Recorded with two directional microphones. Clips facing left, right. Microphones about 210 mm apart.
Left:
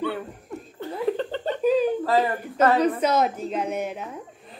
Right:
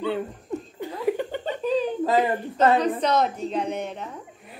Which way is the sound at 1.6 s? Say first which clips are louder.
Left 4 dB; 10° left (ahead or behind).